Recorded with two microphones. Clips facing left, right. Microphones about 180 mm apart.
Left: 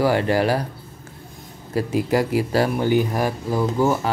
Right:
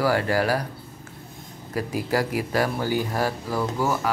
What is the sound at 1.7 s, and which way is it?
Speech, 25° left (ahead or behind).